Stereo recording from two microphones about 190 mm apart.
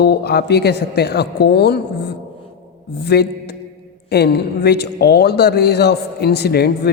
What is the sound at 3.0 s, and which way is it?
Speech, 60° left (ahead or behind).